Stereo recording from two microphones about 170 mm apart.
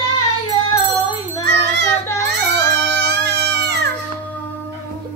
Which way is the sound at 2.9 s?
80° right.